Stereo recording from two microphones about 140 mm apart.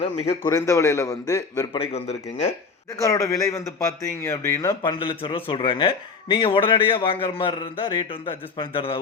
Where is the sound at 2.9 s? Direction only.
20° left (ahead or behind).